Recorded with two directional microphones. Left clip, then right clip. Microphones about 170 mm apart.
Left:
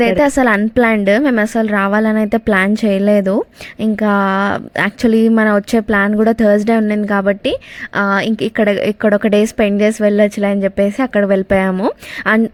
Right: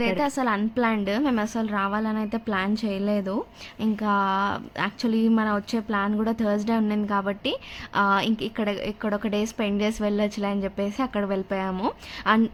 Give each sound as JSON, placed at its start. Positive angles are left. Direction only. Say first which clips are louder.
{"t": 0.3, "sound": "a woman's voice", "louder": "left 13 dB", "side_deg": 45}
{"t": 11.7, "sound": "speech", "louder": "left 10 dB", "side_deg": 40}